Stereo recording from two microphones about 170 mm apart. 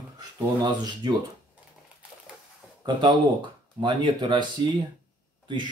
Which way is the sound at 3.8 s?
25° right (ahead or behind).